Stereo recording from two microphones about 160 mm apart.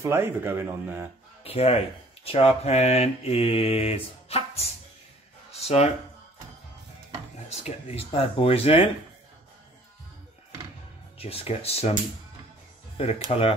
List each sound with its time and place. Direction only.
0.0 s speech: 15° right (ahead or behind)
1.4 s speech: 40° left (ahead or behind)
2.2 s mantra: 40° left (ahead or behind)
5.5 s a sound: 40° left (ahead or behind)
7.4 s mantra: 40° left (ahead or behind)
11.1 s mantra: 40° left (ahead or behind)
12.9 s speech: 40° left (ahead or behind)
13.3 s mantra: 40° left (ahead or behind)